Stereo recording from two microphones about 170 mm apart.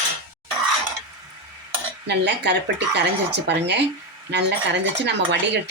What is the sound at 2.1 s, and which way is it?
Speech, 80° right.